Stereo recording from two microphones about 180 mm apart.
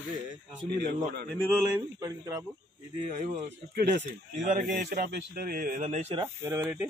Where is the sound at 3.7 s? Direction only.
65° right (ahead or behind).